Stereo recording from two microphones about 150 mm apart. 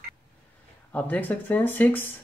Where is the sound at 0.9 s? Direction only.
10° left (ahead or behind).